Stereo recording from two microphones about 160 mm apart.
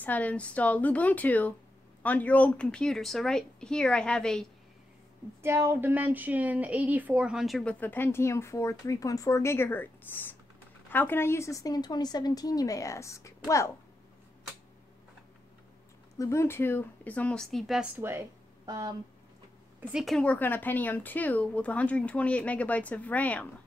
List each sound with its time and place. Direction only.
0.0 s speech: 10° left (ahead or behind)
5.4 s a woman's voice: 15° right (ahead or behind); by 13.7 s 20° left (ahead or behind)
16.2 s speech: 15° left (ahead or behind); by 18.2 s 10° right (ahead or behind)
18.7 s speech: 20° right (ahead or behind)
19.8 s speech: 5° right (ahead or behind)